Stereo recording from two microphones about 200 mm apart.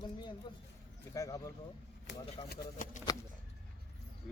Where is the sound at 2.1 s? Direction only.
65° left (ahead or behind).